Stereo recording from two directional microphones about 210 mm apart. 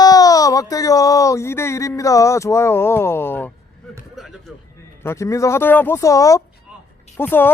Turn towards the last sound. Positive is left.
turn(degrees=10)  # may be behind; listen again after turning